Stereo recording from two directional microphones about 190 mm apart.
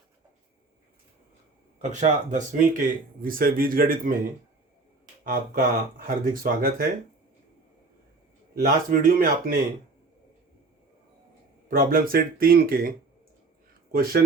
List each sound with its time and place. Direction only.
1.8 s speech: 40° right (ahead or behind)
5.2 s speech: 50° right (ahead or behind)
8.5 s speech: 50° right (ahead or behind)
11.7 s speech: 50° right (ahead or behind)
13.9 s speech: 50° right (ahead or behind)